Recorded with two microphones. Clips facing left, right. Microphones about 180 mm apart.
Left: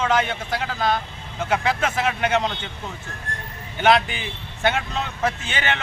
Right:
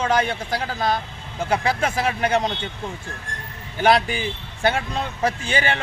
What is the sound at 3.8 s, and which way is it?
Speech, 35° right (ahead or behind).